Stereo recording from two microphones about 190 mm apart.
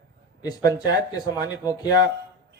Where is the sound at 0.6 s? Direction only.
20° left (ahead or behind).